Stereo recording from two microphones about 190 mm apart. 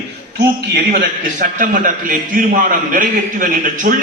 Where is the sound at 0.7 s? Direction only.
45° right (ahead or behind).